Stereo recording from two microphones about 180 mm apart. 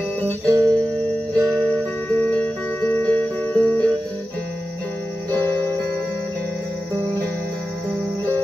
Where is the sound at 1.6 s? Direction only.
10° left (ahead or behind).